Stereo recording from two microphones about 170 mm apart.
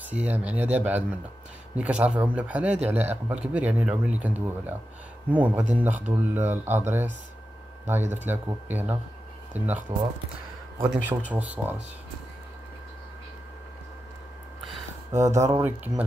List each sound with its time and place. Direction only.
0.1 s speech: 10° right (ahead or behind)
15.1 s speech: 15° right (ahead or behind)